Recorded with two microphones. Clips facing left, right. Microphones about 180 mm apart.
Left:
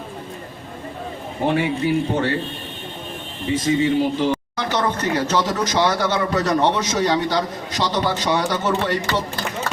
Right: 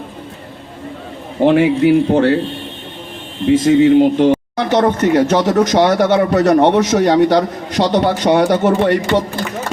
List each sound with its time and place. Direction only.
1.4 s a man's voice: 75° right (ahead or behind)
3.4 s a man's voice: 75° right (ahead or behind); by 9.0 s 60° right (ahead or behind)